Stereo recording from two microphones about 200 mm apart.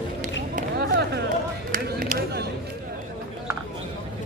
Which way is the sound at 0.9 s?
55° right (ahead or behind).